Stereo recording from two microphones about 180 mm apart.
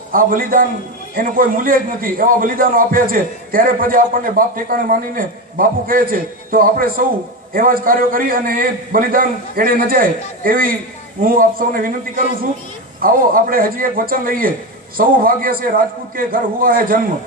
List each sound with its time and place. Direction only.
0.1 s a man's voice: 50° right (ahead or behind)